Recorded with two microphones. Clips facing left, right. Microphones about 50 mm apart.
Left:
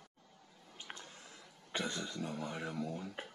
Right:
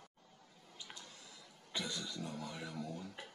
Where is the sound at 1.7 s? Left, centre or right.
Left.